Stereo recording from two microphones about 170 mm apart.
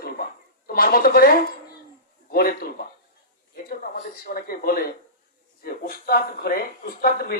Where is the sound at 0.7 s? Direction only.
60° left (ahead or behind).